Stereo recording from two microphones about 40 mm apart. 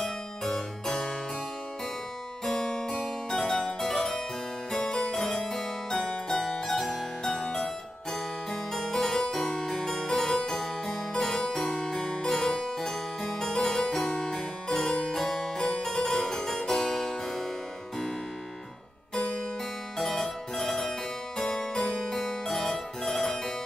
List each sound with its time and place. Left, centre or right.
0.0 s harpsichord: centre
2.4 s harpsichord: centre
20.0 s music: centre
21.4 s harpsichord: centre